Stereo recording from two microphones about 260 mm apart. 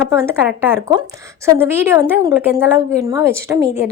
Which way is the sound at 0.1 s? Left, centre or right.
Centre.